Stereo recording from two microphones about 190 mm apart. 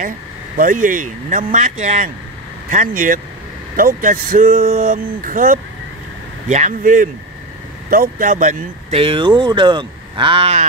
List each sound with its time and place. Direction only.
0.6 s speech: 45° right (ahead or behind)
9.0 s speech: 25° right (ahead or behind)